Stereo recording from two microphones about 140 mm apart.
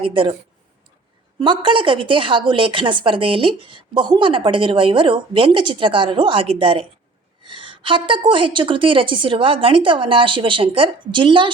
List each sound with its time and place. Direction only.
0.0 s a woman's voice: 40° right (ahead or behind)
1.4 s a woman's voice: 35° right (ahead or behind)